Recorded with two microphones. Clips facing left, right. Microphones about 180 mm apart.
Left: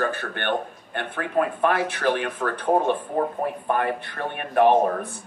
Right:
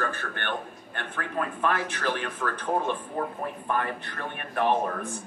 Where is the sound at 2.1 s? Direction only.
55° left (ahead or behind).